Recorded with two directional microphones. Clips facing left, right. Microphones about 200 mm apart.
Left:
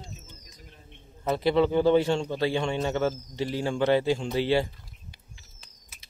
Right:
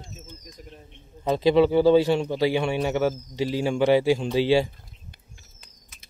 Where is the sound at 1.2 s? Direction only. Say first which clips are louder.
Right 4 dB; 15° right (ahead or behind).